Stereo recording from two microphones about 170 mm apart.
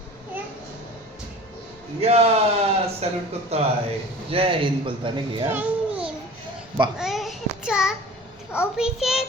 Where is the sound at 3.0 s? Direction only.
40° right (ahead or behind).